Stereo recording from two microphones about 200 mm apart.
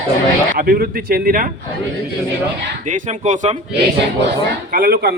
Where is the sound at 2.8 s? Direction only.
40° right (ahead or behind).